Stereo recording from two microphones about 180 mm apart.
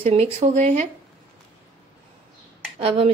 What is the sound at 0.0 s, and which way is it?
Speech, 35° right (ahead or behind).